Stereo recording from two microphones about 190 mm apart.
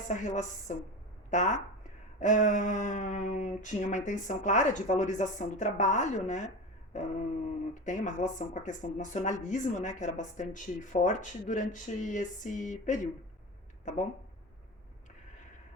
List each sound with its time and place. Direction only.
0.1 s speech: 40° left (ahead or behind)
7.7 s speech: 40° left (ahead or behind)